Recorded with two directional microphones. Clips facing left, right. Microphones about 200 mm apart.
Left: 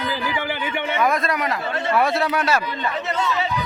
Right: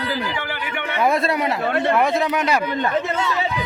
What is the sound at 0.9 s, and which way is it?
Speech, 25° right (ahead or behind).